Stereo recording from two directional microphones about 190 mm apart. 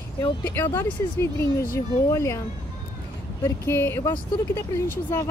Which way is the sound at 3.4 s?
10° left (ahead or behind).